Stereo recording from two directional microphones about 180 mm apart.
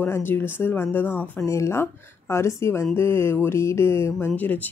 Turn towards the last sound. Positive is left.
turn(degrees=10)  # may be behind; listen again after turning